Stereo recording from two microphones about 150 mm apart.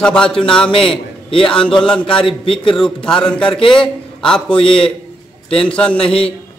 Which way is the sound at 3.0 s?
5° left (ahead or behind).